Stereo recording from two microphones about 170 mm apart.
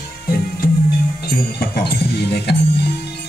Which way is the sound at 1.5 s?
70° left (ahead or behind).